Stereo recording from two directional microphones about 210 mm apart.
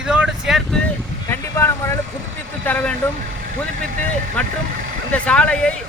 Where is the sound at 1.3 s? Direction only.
10° left (ahead or behind).